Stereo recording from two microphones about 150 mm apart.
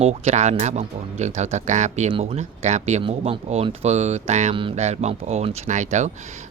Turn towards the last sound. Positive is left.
turn(degrees=-50)  # may be behind; listen again after turning